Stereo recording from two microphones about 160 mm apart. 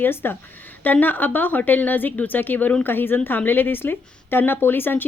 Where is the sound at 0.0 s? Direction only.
15° left (ahead or behind).